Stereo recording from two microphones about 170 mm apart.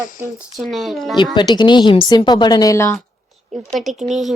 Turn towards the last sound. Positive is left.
turn(degrees=0)  # may be behind; listen again after turning